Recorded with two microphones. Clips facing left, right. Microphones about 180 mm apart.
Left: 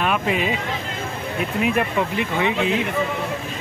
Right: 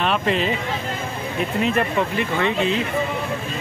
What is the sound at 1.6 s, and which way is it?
Speech, 10° left (ahead or behind).